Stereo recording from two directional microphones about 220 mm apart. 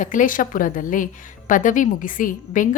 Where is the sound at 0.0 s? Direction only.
35° left (ahead or behind).